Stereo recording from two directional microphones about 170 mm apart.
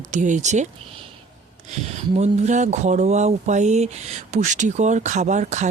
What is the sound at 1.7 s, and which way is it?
Speech, 40° right (ahead or behind).